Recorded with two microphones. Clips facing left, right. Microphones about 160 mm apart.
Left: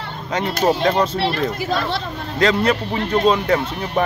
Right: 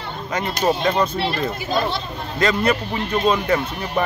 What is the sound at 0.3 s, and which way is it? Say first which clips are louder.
Speech: left 2 dB; centre (ahead or behind).